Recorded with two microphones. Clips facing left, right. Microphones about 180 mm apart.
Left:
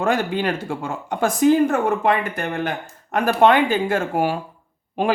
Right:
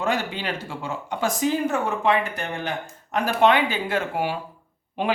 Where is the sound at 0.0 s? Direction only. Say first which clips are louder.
Left 5 dB; 50° left (ahead or behind).